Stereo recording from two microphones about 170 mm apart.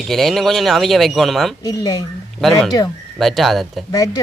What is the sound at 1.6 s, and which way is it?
Speech, 20° left (ahead or behind).